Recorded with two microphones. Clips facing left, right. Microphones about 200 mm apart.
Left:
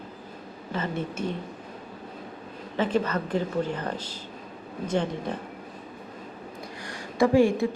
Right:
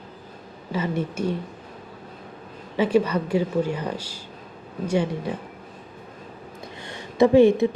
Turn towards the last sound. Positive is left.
turn(degrees=-20)  # may be behind; listen again after turning